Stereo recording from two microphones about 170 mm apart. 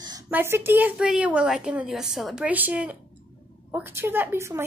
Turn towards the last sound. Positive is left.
turn(degrees=-15)  # may be behind; listen again after turning